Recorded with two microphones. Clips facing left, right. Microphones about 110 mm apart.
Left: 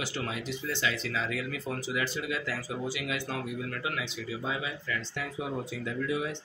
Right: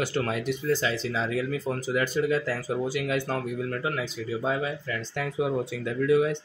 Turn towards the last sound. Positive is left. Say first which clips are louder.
# right 10 dB
turn(degrees=-55)  # may be behind; listen again after turning